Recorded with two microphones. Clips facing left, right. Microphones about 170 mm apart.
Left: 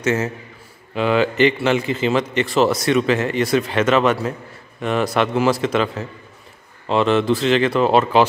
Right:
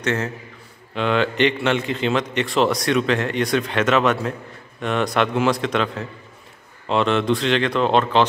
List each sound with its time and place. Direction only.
0.0 s a man's voice: 5° left (ahead or behind)